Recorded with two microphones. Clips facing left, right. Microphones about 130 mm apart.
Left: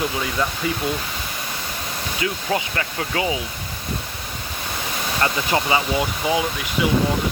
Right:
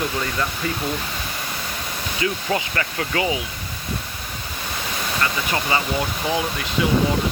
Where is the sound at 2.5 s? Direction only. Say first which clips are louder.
Even; 15° left (ahead or behind).